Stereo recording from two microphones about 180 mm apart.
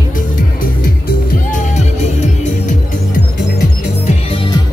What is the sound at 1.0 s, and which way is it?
Music, 40° left (ahead or behind).